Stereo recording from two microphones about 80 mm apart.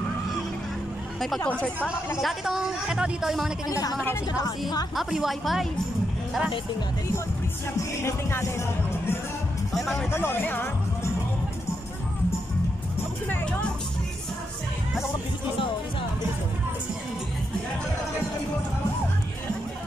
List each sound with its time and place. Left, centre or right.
1.4 s speech: centre
2.2 s speech: centre
3.6 s a woman's voice: left
4.9 s a woman's voice: centre
8.0 s music: left
9.7 s speech: centre
10.1 s speech: left